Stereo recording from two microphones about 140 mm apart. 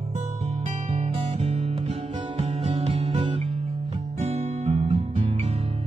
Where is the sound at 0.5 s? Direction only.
50° right (ahead or behind).